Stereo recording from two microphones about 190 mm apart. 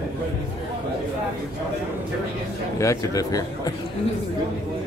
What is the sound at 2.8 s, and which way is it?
Speech, 15° left (ahead or behind).